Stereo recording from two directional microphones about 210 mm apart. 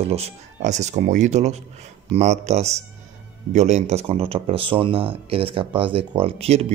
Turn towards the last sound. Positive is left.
turn(degrees=-30)  # may be behind; listen again after turning